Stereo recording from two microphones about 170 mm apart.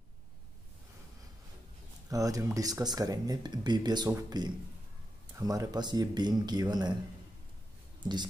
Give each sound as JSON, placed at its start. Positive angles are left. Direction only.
{"t": 2.0, "sound": "speech", "side_deg": -20}